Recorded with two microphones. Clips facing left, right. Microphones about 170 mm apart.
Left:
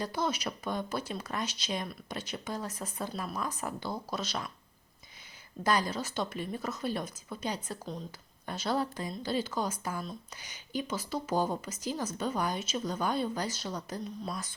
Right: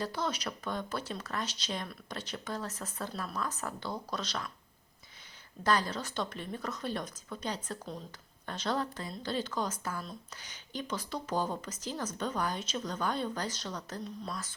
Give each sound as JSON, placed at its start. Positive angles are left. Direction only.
{"t": 0.0, "sound": "speech", "side_deg": 10}
{"t": 5.6, "sound": "speech", "side_deg": 10}